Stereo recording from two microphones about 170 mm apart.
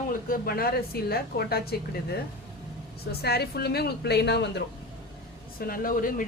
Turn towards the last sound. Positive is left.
turn(degrees=55)  # may be behind; listen again after turning